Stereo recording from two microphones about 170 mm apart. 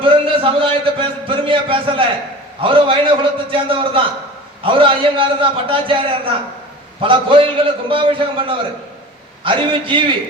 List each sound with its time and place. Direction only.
0.0 s a man's voice: 30° right (ahead or behind)